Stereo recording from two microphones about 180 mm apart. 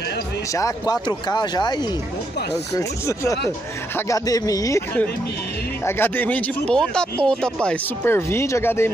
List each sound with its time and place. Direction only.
0.6 s speech: 20° left (ahead or behind)
3.1 s speech: 15° left (ahead or behind)